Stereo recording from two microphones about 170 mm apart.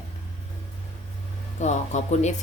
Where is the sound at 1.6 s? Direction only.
45° left (ahead or behind).